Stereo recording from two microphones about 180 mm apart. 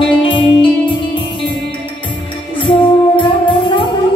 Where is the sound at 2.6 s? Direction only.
25° left (ahead or behind).